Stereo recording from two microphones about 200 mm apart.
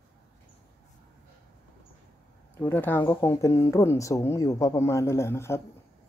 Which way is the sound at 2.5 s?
10° left (ahead or behind).